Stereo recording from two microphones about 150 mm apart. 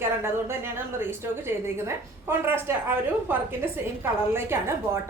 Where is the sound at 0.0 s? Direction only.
15° right (ahead or behind).